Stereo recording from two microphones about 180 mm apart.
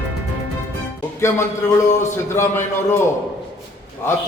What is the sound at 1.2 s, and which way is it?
A man's voice, 15° left (ahead or behind).